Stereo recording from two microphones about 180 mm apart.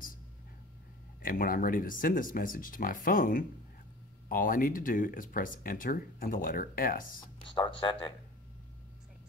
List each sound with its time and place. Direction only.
1.2 s speech: 50° left (ahead or behind)
7.5 s speech: 25° left (ahead or behind)